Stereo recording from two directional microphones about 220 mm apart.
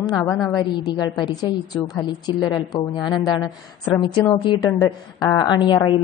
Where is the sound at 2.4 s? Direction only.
20° left (ahead or behind).